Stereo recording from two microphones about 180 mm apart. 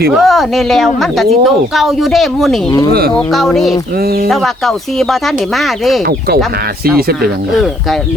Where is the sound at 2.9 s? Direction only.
60° right (ahead or behind).